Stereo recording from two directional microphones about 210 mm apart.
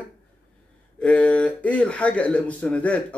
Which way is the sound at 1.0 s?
5° left (ahead or behind).